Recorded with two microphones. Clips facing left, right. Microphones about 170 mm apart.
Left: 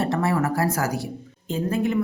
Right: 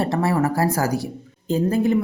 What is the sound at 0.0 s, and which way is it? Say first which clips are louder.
A woman's voice: right 2 dB; 35° right (ahead or behind).